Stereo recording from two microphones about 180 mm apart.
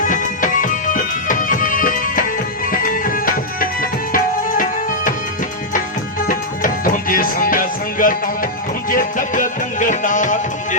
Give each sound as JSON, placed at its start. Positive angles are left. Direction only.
{"t": 0.0, "sound": "music", "side_deg": 45}
{"t": 6.2, "sound": "music", "side_deg": 50}